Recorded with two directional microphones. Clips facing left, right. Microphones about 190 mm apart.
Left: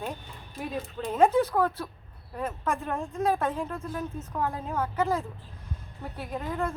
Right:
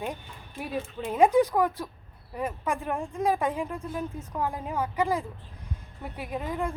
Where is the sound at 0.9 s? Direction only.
10° right (ahead or behind).